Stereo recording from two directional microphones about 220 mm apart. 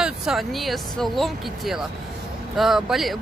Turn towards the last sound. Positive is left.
turn(degrees=0)  # may be behind; listen again after turning